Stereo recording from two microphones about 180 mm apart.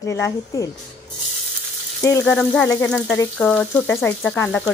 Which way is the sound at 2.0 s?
15° left (ahead or behind).